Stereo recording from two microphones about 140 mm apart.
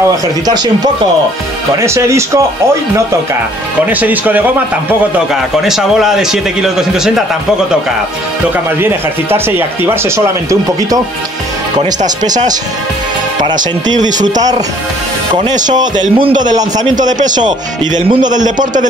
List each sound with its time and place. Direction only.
1.8 s speech: 20° right (ahead or behind)
3.8 s a man's voice: 10° right (ahead or behind)
8.7 s speech: 15° right (ahead or behind)
13.4 s speech: 30° right (ahead or behind)
13.9 s a man's voice: 65° right (ahead or behind)
15.7 s speech: 30° right (ahead or behind)
16.9 s a man's voice: 65° right (ahead or behind)